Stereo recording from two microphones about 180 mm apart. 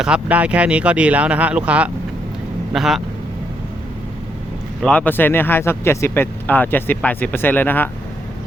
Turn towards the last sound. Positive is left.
turn(degrees=10)  # may be behind; listen again after turning